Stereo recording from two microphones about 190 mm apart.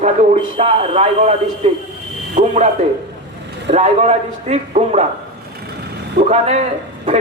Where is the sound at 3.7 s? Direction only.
35° right (ahead or behind).